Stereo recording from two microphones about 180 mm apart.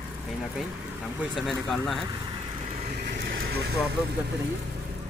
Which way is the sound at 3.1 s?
70° right (ahead or behind).